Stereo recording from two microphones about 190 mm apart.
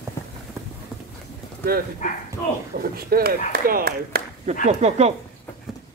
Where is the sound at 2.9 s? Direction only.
50° right (ahead or behind).